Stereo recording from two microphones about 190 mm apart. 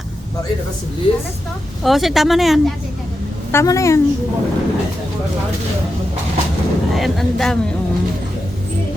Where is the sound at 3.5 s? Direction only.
15° left (ahead or behind).